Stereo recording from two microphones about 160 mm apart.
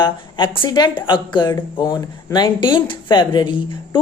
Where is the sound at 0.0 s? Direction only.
30° left (ahead or behind).